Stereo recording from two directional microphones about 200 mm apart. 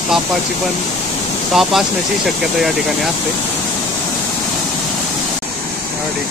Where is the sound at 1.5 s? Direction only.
Centre (ahead or behind).